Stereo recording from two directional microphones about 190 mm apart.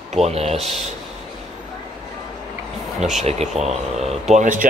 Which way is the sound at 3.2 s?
35° right (ahead or behind).